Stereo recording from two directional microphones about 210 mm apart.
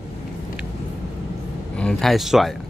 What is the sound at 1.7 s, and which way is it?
Speech, 5° left (ahead or behind).